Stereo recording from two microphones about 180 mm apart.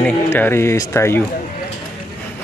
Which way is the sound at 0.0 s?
10° left (ahead or behind).